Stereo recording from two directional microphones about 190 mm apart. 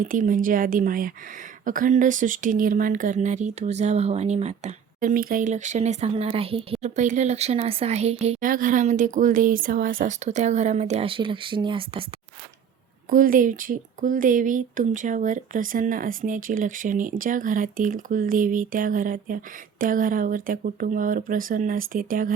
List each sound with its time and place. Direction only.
0.1 s speech: 45° right (ahead or behind); by 12.0 s 25° right (ahead or behind)
13.1 s speech: 45° right (ahead or behind)